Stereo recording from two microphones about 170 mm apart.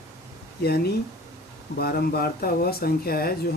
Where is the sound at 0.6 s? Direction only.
70° left (ahead or behind).